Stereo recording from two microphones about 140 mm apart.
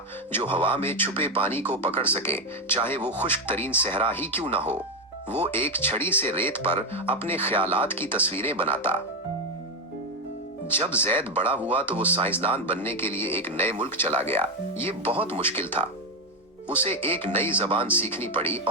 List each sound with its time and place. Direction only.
0.3 s speech: 15° left (ahead or behind)
10.8 s speech: 15° left (ahead or behind)
17.1 s speech: 15° left (ahead or behind)